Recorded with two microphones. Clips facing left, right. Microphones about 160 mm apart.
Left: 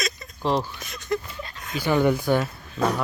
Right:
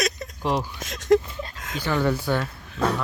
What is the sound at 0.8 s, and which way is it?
Speech, 90° right.